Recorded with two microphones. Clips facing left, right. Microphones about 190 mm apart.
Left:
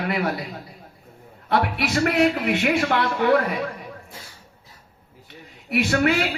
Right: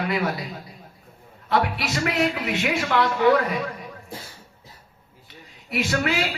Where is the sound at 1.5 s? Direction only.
55° left (ahead or behind).